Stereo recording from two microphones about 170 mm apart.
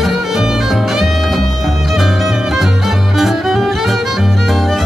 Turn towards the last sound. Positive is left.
turn(degrees=0)  # may be behind; listen again after turning